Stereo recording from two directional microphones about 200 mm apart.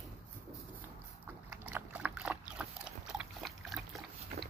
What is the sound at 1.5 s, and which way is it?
Dog, 10° right (ahead or behind).